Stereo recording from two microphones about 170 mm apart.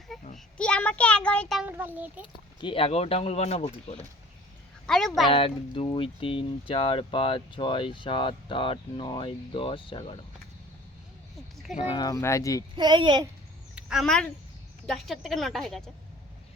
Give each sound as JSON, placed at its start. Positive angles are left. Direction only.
{"t": 0.3, "sound": "a sound", "side_deg": 5}
{"t": 1.7, "sound": "a child's voice", "side_deg": -10}
{"t": 2.2, "sound": "speech", "side_deg": 30}
{"t": 4.9, "sound": "speech", "side_deg": 0}
{"t": 5.3, "sound": "speech", "side_deg": 30}
{"t": 11.7, "sound": "speech", "side_deg": 35}
{"t": 12.7, "sound": "speech", "side_deg": -25}
{"t": 13.7, "sound": "speech", "side_deg": -5}